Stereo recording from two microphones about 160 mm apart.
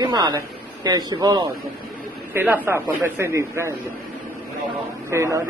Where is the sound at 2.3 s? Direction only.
10° right (ahead or behind).